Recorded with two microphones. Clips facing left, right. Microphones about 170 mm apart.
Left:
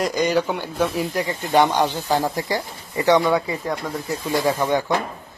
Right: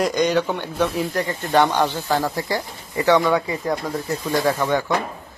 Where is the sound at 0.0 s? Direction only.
Centre (ahead or behind).